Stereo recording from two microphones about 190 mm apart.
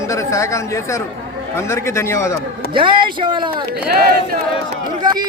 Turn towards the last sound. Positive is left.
turn(degrees=-20)  # may be behind; listen again after turning